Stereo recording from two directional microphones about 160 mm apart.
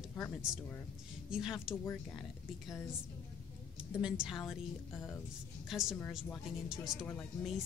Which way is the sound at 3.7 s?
5° right (ahead or behind).